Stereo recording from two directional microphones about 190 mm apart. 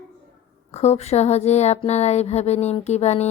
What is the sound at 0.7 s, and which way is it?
Speech, 35° left (ahead or behind).